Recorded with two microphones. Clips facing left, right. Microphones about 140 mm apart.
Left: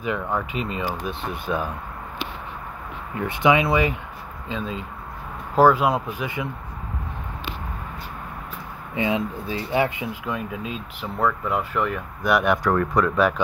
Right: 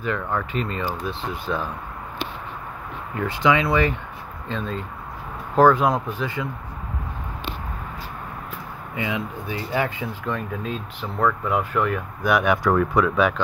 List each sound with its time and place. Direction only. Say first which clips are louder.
0.0 s speech: even; 15° left (ahead or behind)
3.2 s speech: left 1 dB; 20° left (ahead or behind)
4.5 s speech: right 1 dB; 5° left (ahead or behind)
6.2 s speech: right 1 dB; 20° left (ahead or behind)
8.9 s speech: left 4 dB; 30° left (ahead or behind)
10.2 s speech: right 3 dB; 5° left (ahead or behind)